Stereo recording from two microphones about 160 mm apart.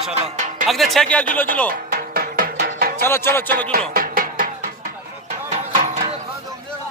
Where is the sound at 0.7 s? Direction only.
Centre (ahead or behind).